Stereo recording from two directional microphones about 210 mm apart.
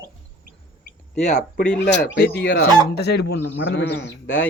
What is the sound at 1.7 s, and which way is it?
Speech, 55° left (ahead or behind).